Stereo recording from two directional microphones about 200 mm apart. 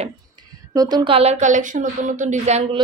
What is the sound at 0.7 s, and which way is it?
A woman's voice, 20° right (ahead or behind).